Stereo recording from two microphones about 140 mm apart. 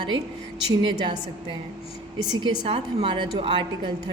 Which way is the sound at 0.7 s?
30° right (ahead or behind).